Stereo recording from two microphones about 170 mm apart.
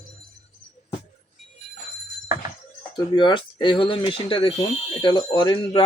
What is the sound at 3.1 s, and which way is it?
Speech, 25° left (ahead or behind).